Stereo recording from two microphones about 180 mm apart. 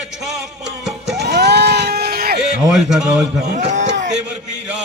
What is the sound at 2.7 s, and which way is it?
Speech, centre (ahead or behind).